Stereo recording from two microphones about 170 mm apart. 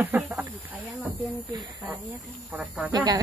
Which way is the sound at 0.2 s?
5° right (ahead or behind).